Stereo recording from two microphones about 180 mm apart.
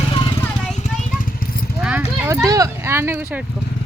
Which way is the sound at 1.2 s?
50° left (ahead or behind).